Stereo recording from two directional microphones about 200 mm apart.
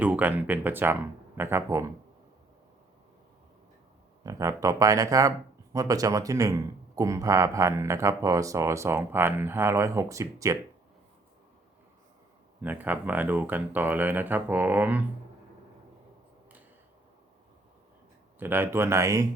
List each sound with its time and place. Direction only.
0.0 s speech: 10° right (ahead or behind)
4.2 s speech: 15° right (ahead or behind)
12.6 s speech: 10° right (ahead or behind)
18.3 s speech: 10° right (ahead or behind)